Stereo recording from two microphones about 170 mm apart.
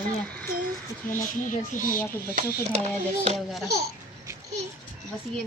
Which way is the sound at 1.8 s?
55° left (ahead or behind).